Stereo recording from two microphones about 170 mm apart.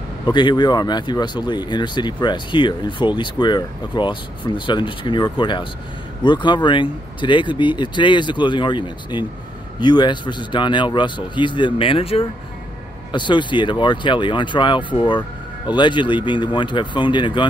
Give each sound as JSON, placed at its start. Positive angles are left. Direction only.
{"t": 0.3, "sound": "speech", "side_deg": 25}